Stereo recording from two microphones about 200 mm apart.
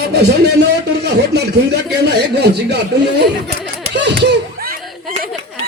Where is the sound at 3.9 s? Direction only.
60° right (ahead or behind).